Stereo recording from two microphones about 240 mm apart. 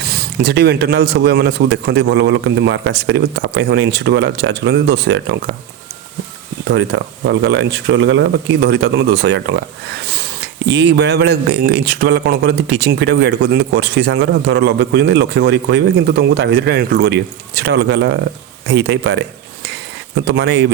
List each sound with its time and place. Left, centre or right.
0.0 s speech: right
6.7 s speech: right
10.7 s speech: right
20.2 s speech: right